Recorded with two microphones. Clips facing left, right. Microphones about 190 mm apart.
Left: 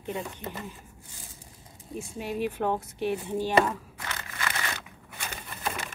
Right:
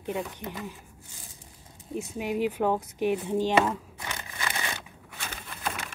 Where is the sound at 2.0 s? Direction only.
15° right (ahead or behind).